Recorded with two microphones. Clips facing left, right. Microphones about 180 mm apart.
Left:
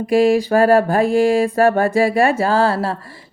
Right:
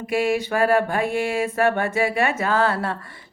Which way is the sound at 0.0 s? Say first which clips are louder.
Left 8 dB; 35° left (ahead or behind).